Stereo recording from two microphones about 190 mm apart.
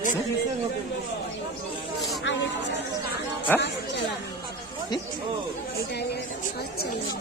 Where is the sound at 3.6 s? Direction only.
65° left (ahead or behind).